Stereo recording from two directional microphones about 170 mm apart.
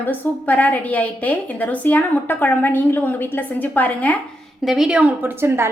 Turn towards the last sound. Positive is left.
turn(degrees=-15)  # may be behind; listen again after turning